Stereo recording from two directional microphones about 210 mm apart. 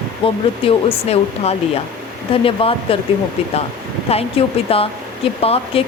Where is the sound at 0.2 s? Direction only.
25° left (ahead or behind).